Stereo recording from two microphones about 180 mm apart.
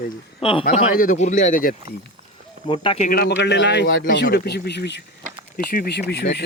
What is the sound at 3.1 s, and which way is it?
Speech, 60° left (ahead or behind).